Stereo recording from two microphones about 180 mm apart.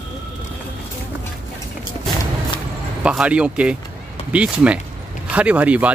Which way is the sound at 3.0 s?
5° right (ahead or behind).